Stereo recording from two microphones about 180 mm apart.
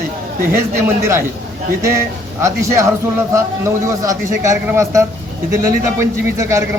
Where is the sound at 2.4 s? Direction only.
15° right (ahead or behind).